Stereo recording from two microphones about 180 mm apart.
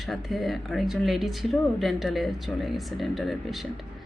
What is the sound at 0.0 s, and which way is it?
Speech, centre (ahead or behind).